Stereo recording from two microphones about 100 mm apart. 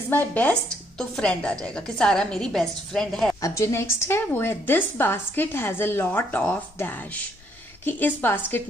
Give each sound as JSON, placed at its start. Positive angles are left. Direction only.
{"t": 0.1, "sound": "speech", "side_deg": 20}
{"t": 3.3, "sound": "a woman's voice", "side_deg": 30}